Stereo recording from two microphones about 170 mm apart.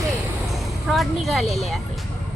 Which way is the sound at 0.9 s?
Centre (ahead or behind).